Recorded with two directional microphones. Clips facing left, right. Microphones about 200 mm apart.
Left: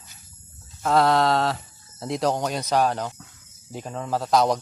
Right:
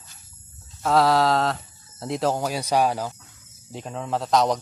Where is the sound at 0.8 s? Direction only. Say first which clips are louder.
Even; centre (ahead or behind).